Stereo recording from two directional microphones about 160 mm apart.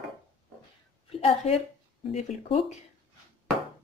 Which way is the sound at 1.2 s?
40° left (ahead or behind).